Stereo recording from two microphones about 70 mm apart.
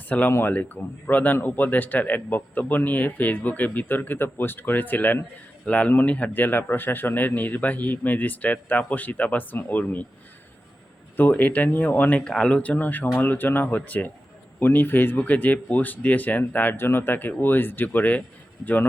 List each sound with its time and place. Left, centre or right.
0.1 s speech: left
11.2 s speech: left
12.2 s speech: centre